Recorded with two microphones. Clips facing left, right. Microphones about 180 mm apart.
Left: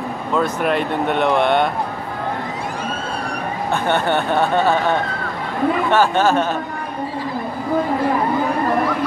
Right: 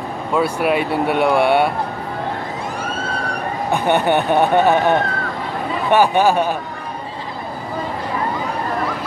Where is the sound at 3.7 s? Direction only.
15° right (ahead or behind).